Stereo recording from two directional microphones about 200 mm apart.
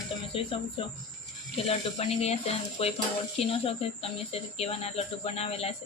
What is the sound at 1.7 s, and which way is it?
Speech, 30° left (ahead or behind).